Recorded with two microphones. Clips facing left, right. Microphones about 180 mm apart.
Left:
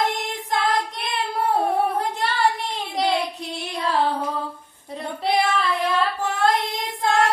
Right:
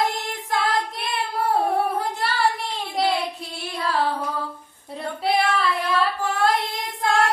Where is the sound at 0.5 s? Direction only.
Centre (ahead or behind).